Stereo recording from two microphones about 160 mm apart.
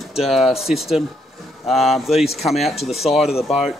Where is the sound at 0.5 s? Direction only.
40° left (ahead or behind).